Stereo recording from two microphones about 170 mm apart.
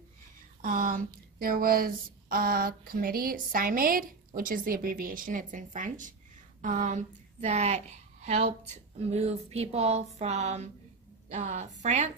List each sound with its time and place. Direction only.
0.6 s a woman's voice: 50° right (ahead or behind)